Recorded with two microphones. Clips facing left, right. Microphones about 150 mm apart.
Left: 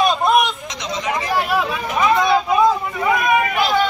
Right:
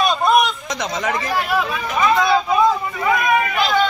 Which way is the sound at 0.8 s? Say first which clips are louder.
Right 2 dB; 50° right (ahead or behind).